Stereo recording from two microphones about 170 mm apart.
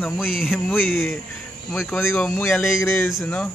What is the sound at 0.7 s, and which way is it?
Speech, 10° left (ahead or behind).